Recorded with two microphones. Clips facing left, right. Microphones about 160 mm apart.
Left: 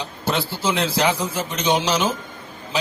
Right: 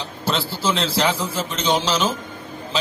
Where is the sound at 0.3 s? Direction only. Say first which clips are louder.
Even; 15° left (ahead or behind).